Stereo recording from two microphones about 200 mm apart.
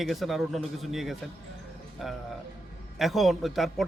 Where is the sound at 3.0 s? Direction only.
Centre (ahead or behind).